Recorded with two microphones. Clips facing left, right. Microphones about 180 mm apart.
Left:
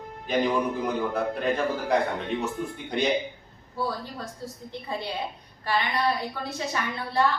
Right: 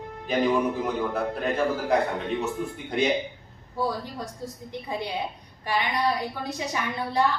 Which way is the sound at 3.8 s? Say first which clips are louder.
Right 2 dB; 15° right (ahead or behind).